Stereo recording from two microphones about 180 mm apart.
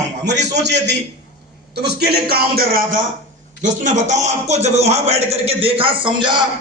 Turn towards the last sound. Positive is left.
turn(degrees=-25)  # may be behind; listen again after turning